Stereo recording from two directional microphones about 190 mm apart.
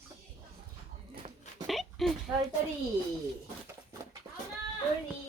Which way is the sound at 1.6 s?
Centre (ahead or behind).